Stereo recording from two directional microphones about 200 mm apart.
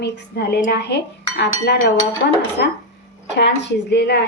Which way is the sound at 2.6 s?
55° left (ahead or behind).